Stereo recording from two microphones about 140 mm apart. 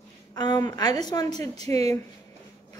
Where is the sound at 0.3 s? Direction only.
30° left (ahead or behind).